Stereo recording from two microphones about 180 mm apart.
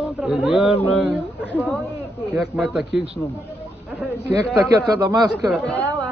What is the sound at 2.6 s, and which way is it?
Speech, centre (ahead or behind).